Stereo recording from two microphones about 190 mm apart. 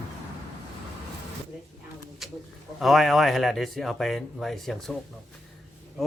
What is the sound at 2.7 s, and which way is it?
A man's voice, centre (ahead or behind).